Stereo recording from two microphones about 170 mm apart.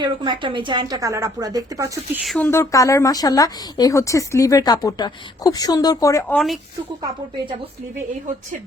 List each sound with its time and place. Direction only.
0.0 s a woman's voice: 30° right (ahead or behind)
2.2 s speech: centre (ahead or behind)
2.5 s a woman's voice: 20° left (ahead or behind)
6.3 s speech: centre (ahead or behind)
7.0 s a woman's voice: 30° right (ahead or behind)